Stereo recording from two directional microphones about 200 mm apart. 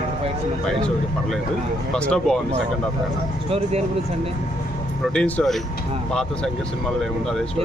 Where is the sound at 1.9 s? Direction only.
5° left (ahead or behind).